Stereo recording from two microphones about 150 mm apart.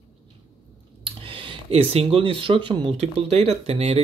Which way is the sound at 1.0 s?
35° right (ahead or behind).